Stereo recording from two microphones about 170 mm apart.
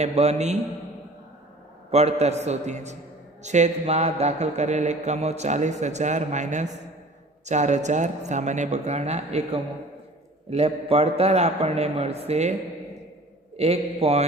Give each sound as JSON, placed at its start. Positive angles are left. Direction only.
{"t": 0.0, "sound": "a man's voice", "side_deg": -40}
{"t": 1.9, "sound": "a man's voice", "side_deg": -40}
{"t": 13.6, "sound": "a man's voice", "side_deg": -35}